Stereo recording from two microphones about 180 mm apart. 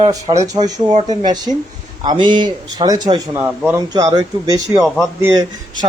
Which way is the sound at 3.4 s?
10° right (ahead or behind).